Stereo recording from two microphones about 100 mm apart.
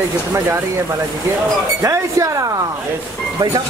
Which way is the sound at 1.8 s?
30° right (ahead or behind).